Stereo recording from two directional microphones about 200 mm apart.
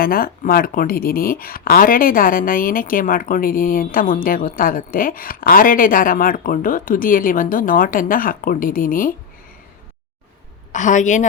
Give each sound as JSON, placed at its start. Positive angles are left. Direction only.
{"t": 0.0, "sound": "speech", "side_deg": 45}
{"t": 10.7, "sound": "a woman's voice", "side_deg": 40}